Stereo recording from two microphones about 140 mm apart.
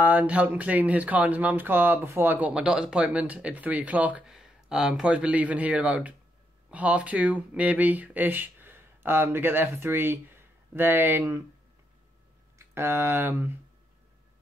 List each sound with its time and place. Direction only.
0.0 s speech: 10° right (ahead or behind)
12.5 s speech: 20° right (ahead or behind)